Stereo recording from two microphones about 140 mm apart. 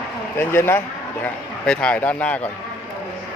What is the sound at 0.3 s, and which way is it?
Speech, 15° left (ahead or behind).